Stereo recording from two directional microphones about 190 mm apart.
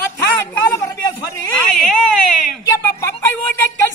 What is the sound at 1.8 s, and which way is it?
Baby cry, 5° left (ahead or behind).